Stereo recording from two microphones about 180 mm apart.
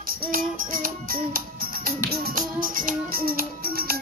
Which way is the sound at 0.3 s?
50° right (ahead or behind).